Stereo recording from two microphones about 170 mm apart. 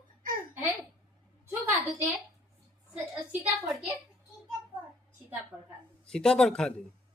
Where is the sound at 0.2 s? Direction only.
55° right (ahead or behind).